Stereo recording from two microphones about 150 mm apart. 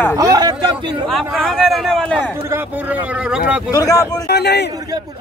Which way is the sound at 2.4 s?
10° right (ahead or behind).